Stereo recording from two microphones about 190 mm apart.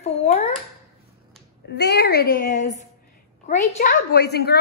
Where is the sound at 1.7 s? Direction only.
60° left (ahead or behind).